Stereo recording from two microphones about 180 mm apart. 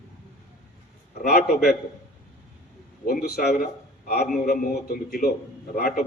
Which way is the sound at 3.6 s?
55° left (ahead or behind).